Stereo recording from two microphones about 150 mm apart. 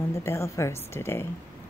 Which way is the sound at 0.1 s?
20° left (ahead or behind).